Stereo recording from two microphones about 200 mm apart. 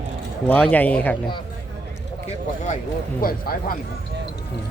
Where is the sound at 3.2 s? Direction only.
45° left (ahead or behind).